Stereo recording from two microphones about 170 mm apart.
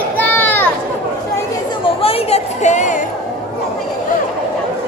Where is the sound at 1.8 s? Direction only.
35° left (ahead or behind).